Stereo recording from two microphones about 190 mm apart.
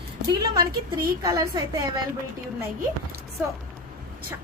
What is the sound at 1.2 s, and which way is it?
Speech, 20° right (ahead or behind).